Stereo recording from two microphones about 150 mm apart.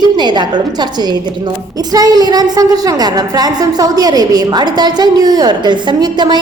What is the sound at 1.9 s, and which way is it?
A woman's voice, 25° right (ahead or behind).